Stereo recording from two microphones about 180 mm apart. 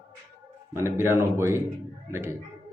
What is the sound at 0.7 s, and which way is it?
A man's voice, 15° right (ahead or behind).